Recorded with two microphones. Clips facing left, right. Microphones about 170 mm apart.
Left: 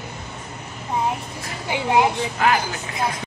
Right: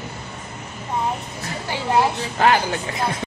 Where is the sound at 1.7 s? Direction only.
15° left (ahead or behind).